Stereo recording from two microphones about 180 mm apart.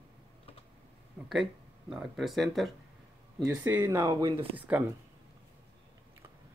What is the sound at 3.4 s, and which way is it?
Speech, 15° right (ahead or behind).